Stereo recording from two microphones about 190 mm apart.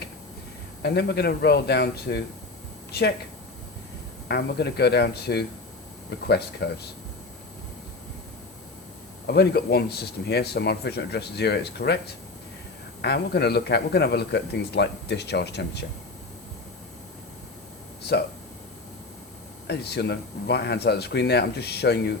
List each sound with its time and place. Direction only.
0.8 s speech: 60° left (ahead or behind)
4.3 s speech: 60° left (ahead or behind)
9.2 s speech: 60° left (ahead or behind)
19.6 s speech: 60° left (ahead or behind)